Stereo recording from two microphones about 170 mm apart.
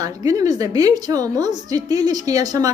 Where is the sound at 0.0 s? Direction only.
20° right (ahead or behind).